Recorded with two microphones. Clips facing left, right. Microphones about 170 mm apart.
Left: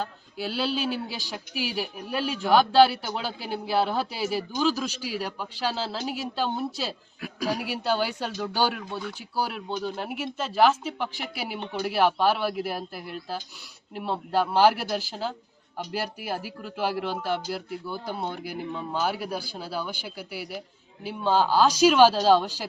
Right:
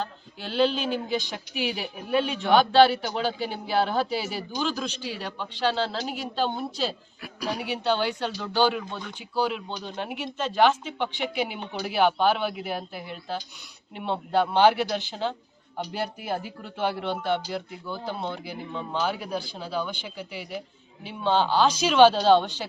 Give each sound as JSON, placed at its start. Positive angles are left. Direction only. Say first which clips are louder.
{"t": 0.0, "sound": "speech", "louder": "left 2 dB", "side_deg": 5}
{"t": 7.2, "sound": "a man's voice", "louder": "left 3 dB", "side_deg": 40}
{"t": 7.6, "sound": "speech", "louder": "right 4 dB", "side_deg": 5}